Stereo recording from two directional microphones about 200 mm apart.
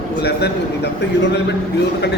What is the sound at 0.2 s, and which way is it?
Speech, 55° left (ahead or behind).